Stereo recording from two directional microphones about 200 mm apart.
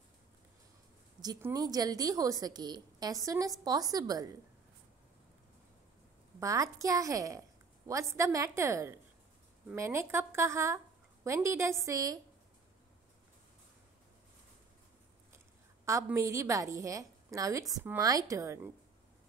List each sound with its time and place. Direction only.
1.2 s a woman's voice: 20° right (ahead or behind)
6.4 s a woman's voice: 15° right (ahead or behind)
15.3 s a woman's voice: 15° right (ahead or behind)